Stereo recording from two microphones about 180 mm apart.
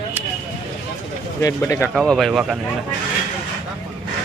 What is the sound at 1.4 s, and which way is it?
Speech, 15° left (ahead or behind).